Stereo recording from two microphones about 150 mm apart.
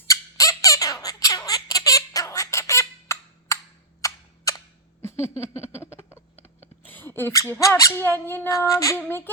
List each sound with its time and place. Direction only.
0.1 s squeak: 20° left (ahead or behind)
1.0 s squawk: 25° left (ahead or behind)
4.0 s cap gun: 20° left (ahead or behind)
5.8 s a sound: 15° left (ahead or behind)
6.8 s speech: 15° left (ahead or behind)